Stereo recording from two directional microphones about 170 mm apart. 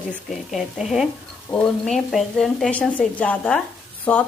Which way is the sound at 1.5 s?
15° left (ahead or behind).